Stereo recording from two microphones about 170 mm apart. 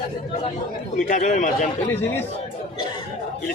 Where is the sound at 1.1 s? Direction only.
45° left (ahead or behind).